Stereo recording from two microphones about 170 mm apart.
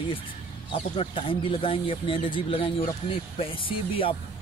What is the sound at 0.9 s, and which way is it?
Speech, 30° left (ahead or behind).